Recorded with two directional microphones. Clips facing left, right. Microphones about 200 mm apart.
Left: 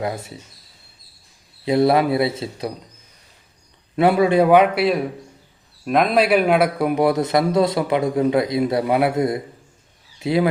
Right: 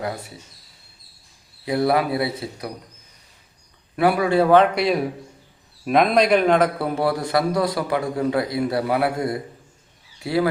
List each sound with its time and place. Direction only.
0.0 s a man's voice: 25° left (ahead or behind)
1.6 s a man's voice: 25° left (ahead or behind)
3.9 s a man's voice: 25° left (ahead or behind)